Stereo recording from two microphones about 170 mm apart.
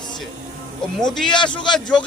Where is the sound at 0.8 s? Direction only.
5° left (ahead or behind).